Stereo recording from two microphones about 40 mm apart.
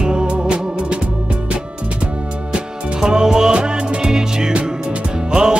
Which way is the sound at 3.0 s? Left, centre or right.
Centre.